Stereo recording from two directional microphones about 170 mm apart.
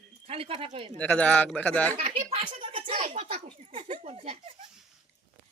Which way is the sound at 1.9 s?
35° right (ahead or behind).